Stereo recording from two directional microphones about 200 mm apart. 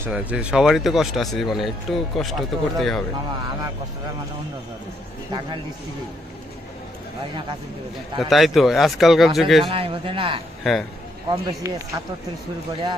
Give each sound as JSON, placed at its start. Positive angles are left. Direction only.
{"t": 0.0, "sound": "speech", "side_deg": -5}
{"t": 8.2, "sound": "speech", "side_deg": 0}
{"t": 9.7, "sound": "a man's voice", "side_deg": -25}
{"t": 10.6, "sound": "speech", "side_deg": 0}
{"t": 11.2, "sound": "speech", "side_deg": -15}